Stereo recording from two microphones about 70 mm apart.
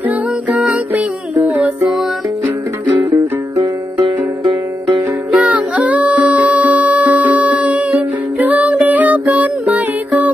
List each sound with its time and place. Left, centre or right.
0.7 s music: right
5.3 s music: centre